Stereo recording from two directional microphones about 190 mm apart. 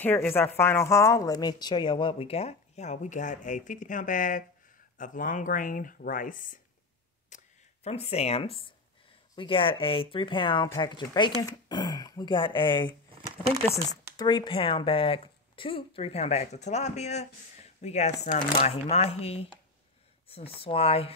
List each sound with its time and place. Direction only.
0.0 s speech: 10° left (ahead or behind); by 6.6 s 45° left (ahead or behind)
7.2 s camera: 35° left (ahead or behind)
9.4 s speech: 30° left (ahead or behind)
14.1 s speech: 25° left (ahead or behind)